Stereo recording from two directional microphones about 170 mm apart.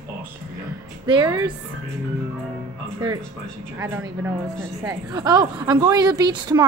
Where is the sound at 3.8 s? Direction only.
15° right (ahead or behind).